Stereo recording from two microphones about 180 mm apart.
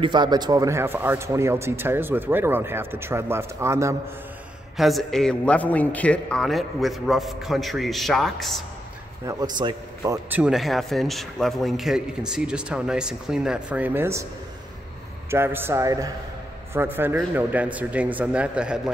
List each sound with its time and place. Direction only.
0.0 s a man's voice: 25° right (ahead or behind)
4.7 s a man's voice: centre (ahead or behind)
9.2 s a man's voice: 20° right (ahead or behind)
10.4 s a man's voice: centre (ahead or behind)
15.3 s a man's voice: 10° right (ahead or behind)